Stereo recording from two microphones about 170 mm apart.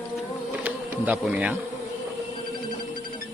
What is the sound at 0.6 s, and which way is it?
Insect, 10° right (ahead or behind).